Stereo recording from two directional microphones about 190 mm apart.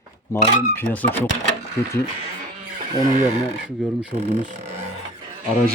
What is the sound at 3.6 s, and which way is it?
Speech, 5° right (ahead or behind).